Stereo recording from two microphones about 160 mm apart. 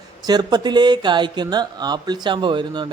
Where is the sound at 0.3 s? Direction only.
25° right (ahead or behind).